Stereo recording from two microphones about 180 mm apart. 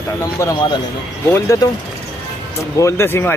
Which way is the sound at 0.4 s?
20° left (ahead or behind).